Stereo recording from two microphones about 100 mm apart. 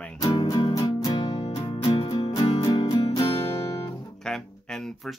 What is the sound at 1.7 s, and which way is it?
Music, 65° left (ahead or behind).